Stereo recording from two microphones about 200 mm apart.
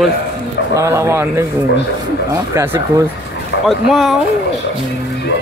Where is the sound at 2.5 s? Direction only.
10° right (ahead or behind).